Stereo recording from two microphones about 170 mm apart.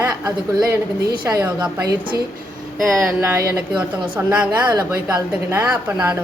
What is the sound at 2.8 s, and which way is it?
A woman's voice, centre (ahead or behind).